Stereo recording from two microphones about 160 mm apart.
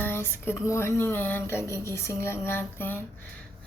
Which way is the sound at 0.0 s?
15° left (ahead or behind).